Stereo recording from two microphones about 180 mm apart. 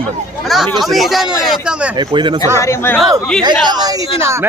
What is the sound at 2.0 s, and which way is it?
Speech, 25° right (ahead or behind).